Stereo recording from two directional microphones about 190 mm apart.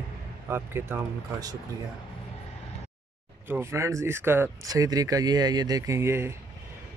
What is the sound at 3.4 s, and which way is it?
Speech, 15° right (ahead or behind).